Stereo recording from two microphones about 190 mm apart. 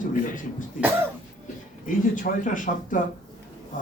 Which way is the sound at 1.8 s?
45° left (ahead or behind).